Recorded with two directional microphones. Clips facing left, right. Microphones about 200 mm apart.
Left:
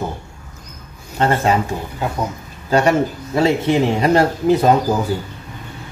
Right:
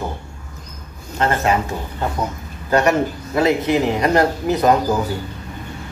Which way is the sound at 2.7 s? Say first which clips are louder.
Left 1 dB; 30° left (ahead or behind).